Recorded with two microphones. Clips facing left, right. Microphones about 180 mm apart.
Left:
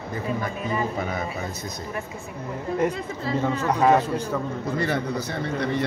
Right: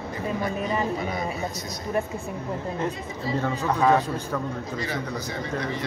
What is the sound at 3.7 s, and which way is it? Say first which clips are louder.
Speech: left 2 dB; 5° left (ahead or behind).